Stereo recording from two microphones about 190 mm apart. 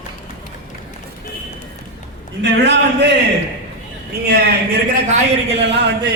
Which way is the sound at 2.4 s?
65° right (ahead or behind).